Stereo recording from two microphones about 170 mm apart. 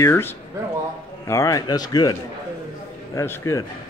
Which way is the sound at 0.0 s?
15° left (ahead or behind).